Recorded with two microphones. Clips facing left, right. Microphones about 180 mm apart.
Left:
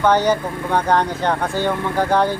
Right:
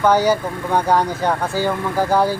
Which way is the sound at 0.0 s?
10° right (ahead or behind).